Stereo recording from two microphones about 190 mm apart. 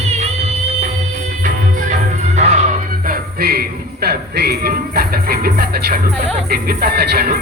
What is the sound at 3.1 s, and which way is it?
Music, 55° right (ahead or behind).